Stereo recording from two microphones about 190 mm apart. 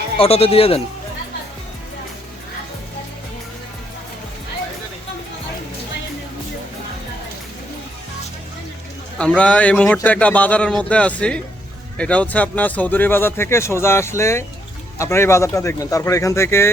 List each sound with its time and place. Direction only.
0.2 s speech: 30° left (ahead or behind)
9.1 s speech: 5° left (ahead or behind)